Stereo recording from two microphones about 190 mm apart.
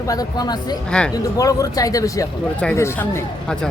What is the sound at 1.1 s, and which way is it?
Speech, 20° left (ahead or behind).